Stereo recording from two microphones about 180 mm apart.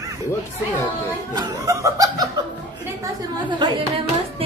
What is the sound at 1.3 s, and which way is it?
Snicker, 20° right (ahead or behind).